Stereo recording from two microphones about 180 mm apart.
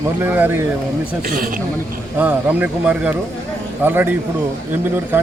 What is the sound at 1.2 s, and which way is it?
Speech, 50° right (ahead or behind).